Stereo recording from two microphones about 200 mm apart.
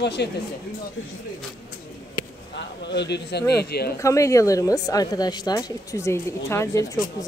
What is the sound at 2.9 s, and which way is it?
Speech, 55° left (ahead or behind).